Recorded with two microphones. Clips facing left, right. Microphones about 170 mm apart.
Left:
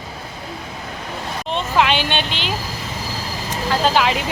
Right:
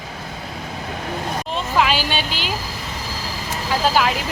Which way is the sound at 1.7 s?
Centre (ahead or behind).